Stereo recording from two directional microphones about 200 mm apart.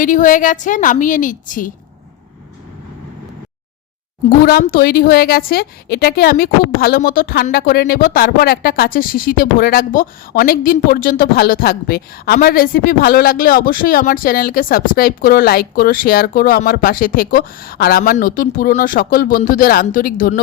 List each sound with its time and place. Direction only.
0.0 s a woman's voice: 40° left (ahead or behind)
4.3 s a woman's voice: 45° left (ahead or behind)